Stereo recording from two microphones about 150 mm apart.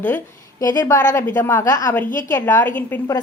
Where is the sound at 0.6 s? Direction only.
25° left (ahead or behind).